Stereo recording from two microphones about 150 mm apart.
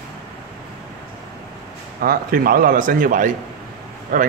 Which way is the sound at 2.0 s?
85° right.